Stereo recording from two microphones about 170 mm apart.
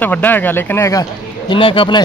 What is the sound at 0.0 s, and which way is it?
Speech, 10° left (ahead or behind).